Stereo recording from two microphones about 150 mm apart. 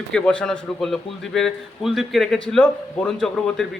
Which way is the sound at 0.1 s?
5° left (ahead or behind).